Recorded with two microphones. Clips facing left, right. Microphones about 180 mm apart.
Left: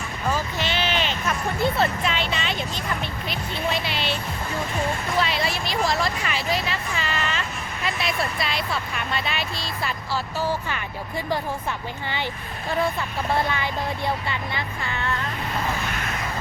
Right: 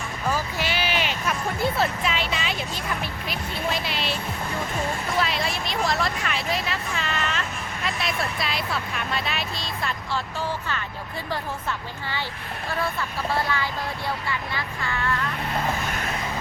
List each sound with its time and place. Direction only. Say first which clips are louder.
0.3 s speech: left 1 dB; 10° right (ahead or behind); by 10.8 s 10° left (ahead or behind)
12.8 s speech: left 3 dB; 20° left (ahead or behind)